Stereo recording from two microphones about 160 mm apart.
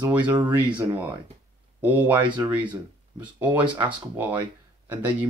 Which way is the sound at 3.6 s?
30° right (ahead or behind).